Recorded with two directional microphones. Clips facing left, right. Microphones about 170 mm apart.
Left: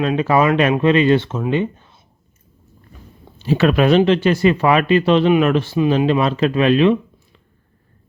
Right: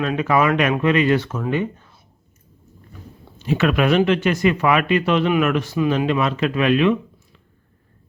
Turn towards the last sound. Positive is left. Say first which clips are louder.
# left 3 dB
turn(degrees=30)  # may be behind; listen again after turning